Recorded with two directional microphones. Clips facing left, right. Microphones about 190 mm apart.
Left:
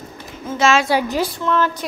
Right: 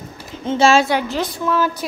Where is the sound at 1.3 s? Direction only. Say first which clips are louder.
Right 3 dB; 5° right (ahead or behind).